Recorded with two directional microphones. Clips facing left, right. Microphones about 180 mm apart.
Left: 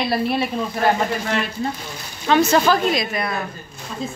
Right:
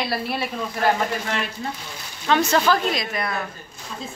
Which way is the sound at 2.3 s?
5° left (ahead or behind).